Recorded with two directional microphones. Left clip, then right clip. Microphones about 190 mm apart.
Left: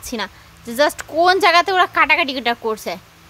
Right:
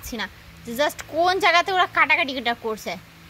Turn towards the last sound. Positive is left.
turn(degrees=20)  # may be behind; listen again after turning